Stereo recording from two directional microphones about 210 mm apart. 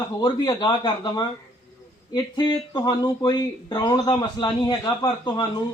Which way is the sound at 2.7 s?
20° left (ahead or behind).